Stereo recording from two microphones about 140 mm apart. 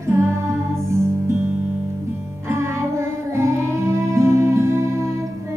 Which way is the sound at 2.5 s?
20° right (ahead or behind).